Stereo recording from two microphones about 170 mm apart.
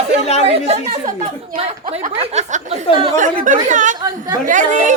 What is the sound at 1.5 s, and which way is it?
Speech, 35° right (ahead or behind).